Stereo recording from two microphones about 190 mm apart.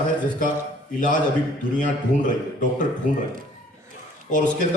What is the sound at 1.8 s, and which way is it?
Speech, 45° left (ahead or behind).